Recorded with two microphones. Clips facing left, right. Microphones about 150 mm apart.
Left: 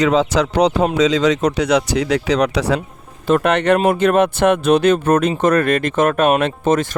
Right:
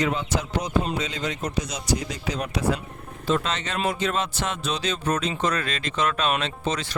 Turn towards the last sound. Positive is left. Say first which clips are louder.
# left 11 dB
turn(degrees=50)  # may be behind; listen again after turning